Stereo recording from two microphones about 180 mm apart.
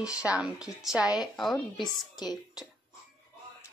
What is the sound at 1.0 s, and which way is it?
Speech, 20° left (ahead or behind).